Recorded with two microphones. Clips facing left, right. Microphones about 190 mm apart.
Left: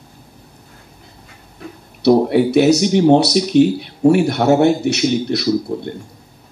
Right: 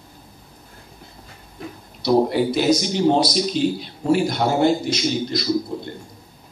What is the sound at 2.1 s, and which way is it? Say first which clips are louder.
Speech: left 5 dB; 65° left (ahead or behind).